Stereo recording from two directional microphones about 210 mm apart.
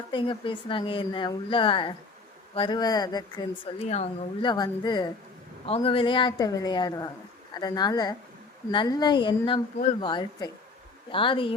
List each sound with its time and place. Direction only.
0.1 s speech: 25° left (ahead or behind)